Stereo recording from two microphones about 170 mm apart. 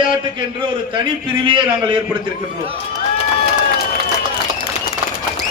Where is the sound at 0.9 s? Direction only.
30° right (ahead or behind).